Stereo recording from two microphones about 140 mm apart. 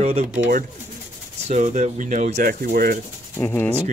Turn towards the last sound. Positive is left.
turn(degrees=15)  # may be behind; listen again after turning